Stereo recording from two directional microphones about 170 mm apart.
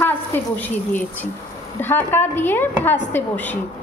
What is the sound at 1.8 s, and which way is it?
A woman's voice, 10° left (ahead or behind).